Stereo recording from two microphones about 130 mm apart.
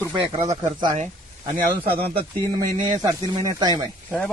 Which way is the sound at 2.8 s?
80° right.